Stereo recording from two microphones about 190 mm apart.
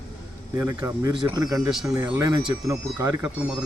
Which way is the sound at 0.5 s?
15° right (ahead or behind).